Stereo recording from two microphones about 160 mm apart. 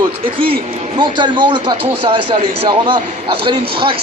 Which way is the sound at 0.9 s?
30° right (ahead or behind).